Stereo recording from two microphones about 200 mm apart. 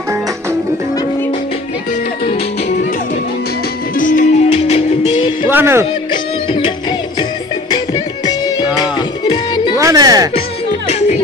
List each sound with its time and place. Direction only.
3.9 s music: 40° left (ahead or behind)
5.5 s speech: 10° right (ahead or behind)
8.3 s music: 20° left (ahead or behind)
9.8 s music: 15° right (ahead or behind)